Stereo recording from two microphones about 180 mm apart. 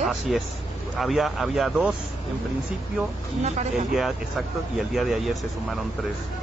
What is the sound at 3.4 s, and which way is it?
Speech, 40° right (ahead or behind).